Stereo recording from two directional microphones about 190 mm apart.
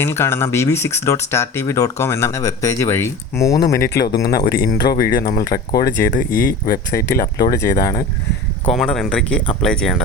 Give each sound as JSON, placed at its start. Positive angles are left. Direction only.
{"t": 0.0, "sound": "speech", "side_deg": 10}
{"t": 3.8, "sound": "speech", "side_deg": 60}
{"t": 7.5, "sound": "speech", "side_deg": 15}
{"t": 8.6, "sound": "speech", "side_deg": 0}